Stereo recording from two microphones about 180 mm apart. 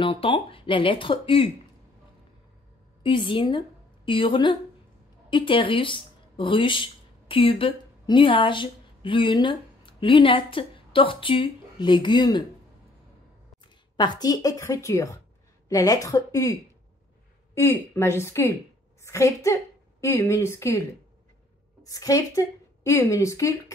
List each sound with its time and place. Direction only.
0.0 s speech: 30° left (ahead or behind)
3.0 s a woman's voice: 30° left (ahead or behind)
13.9 s speech: 25° left (ahead or behind)
17.6 s a woman's voice: 15° left (ahead or behind)
21.8 s a woman's voice: 20° left (ahead or behind)